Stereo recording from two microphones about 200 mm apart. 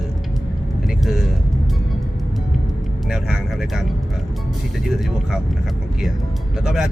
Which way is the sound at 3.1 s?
Centre (ahead or behind).